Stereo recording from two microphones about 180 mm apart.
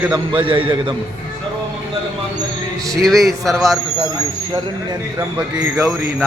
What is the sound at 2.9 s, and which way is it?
Speech, centre (ahead or behind).